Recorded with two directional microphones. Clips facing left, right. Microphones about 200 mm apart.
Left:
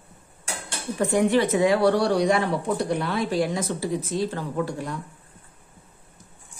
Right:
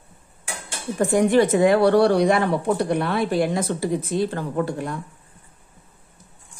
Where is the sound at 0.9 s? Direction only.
45° right (ahead or behind).